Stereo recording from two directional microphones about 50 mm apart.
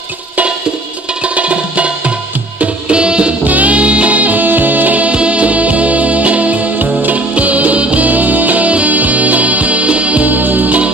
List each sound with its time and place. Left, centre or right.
1.2 s music: right
2.6 s tabla: right
3.4 s music: right